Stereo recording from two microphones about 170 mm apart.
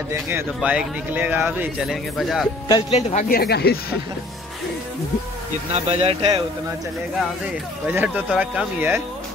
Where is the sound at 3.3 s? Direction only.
65° left (ahead or behind).